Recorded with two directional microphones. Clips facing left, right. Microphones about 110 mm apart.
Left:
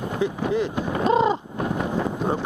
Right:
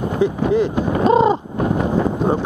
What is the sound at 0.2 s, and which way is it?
Speech, 40° right (ahead or behind).